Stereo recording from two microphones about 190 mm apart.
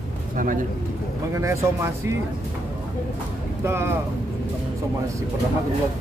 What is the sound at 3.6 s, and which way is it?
Speech, 10° right (ahead or behind).